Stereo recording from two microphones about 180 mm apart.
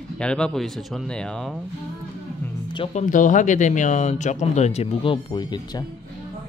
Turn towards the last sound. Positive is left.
turn(degrees=25)  # may be behind; listen again after turning